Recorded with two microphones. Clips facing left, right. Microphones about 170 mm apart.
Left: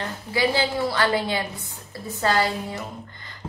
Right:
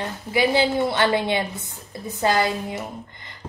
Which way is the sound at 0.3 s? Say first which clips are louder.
Right 3 dB; 20° right (ahead or behind).